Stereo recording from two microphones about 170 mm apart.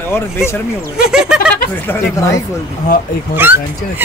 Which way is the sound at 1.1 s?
5° right (ahead or behind).